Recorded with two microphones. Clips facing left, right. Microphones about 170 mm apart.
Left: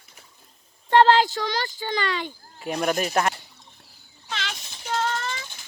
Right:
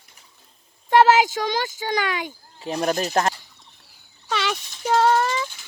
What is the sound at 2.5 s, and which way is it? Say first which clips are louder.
Speech: right 1 dB; 30° right (ahead or behind).